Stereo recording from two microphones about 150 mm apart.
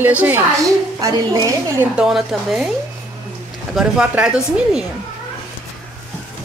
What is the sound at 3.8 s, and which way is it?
A woman's voice, 5° right (ahead or behind).